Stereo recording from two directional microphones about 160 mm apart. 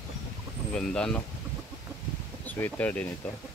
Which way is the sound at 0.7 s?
5° left (ahead or behind).